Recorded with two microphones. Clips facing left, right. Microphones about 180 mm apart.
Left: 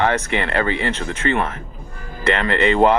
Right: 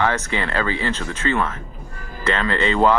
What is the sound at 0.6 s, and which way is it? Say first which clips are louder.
Speech: left 2 dB; 60° left (ahead or behind).